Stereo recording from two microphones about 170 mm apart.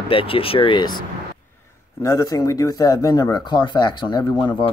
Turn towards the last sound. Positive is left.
turn(degrees=25)  # may be behind; listen again after turning